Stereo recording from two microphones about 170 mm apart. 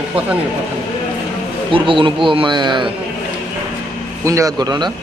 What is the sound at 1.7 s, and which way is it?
A man's voice, 30° right (ahead or behind).